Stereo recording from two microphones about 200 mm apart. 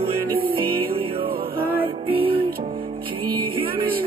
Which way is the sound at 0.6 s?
25° right (ahead or behind).